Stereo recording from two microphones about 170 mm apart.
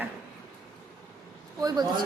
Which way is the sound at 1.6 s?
25° right (ahead or behind).